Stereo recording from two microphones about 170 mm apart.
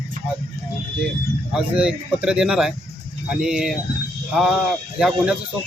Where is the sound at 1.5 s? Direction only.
5° right (ahead or behind).